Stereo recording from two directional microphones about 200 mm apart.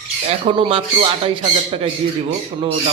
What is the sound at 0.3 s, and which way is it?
Speech, 30° right (ahead or behind).